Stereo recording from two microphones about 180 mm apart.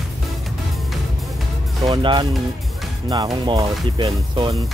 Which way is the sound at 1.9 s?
25° right (ahead or behind).